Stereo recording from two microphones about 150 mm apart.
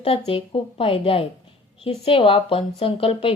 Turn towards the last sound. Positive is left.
turn(degrees=40)  # may be behind; listen again after turning